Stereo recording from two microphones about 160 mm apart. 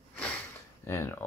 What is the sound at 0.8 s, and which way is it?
Speech, 15° left (ahead or behind).